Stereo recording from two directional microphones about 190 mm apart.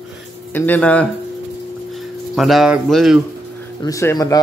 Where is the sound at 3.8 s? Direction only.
15° left (ahead or behind).